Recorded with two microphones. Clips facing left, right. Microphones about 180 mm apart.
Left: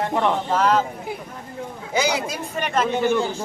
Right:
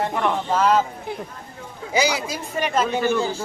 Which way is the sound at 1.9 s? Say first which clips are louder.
Right 1 dB; 5° right (ahead or behind).